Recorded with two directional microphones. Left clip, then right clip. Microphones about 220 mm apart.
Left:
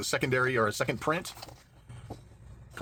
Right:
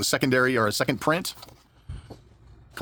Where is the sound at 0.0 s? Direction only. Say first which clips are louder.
Right 6 dB; 45° right (ahead or behind).